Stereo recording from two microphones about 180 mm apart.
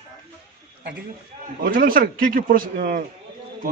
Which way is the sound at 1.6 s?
50° right (ahead or behind).